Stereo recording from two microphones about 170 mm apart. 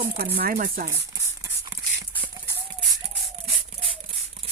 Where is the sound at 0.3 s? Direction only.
60° right (ahead or behind).